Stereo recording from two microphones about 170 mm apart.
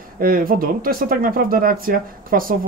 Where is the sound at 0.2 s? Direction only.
55° right (ahead or behind).